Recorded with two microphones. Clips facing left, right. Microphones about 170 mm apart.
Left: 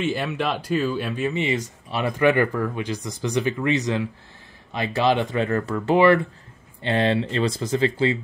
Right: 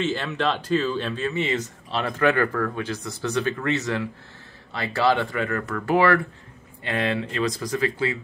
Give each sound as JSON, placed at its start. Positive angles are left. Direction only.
{"t": 0.0, "sound": "speech", "side_deg": 10}